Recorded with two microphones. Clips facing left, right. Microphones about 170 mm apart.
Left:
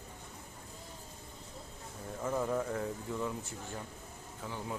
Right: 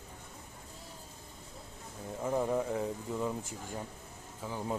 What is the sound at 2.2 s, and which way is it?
Speech, 20° right (ahead or behind).